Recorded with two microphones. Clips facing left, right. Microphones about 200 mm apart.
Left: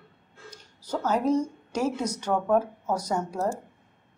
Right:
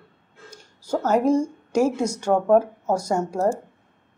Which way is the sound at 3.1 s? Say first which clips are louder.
Right 5 dB; 45° right (ahead or behind).